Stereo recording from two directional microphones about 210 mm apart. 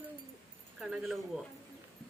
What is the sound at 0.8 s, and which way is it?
Speech, centre (ahead or behind).